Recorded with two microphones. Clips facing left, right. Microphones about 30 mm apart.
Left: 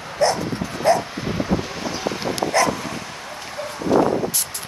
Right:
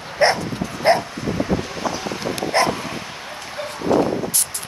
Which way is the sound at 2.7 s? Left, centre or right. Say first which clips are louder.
Right 1 dB; centre.